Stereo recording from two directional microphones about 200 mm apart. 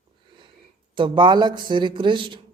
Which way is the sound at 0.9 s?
25° right (ahead or behind).